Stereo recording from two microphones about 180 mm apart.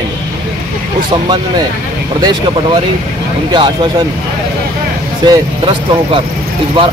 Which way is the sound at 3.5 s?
25° right (ahead or behind).